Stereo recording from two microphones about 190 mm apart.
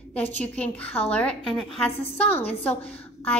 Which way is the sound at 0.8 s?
30° left (ahead or behind).